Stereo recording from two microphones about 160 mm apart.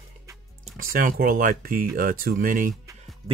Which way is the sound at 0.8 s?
65° right (ahead or behind).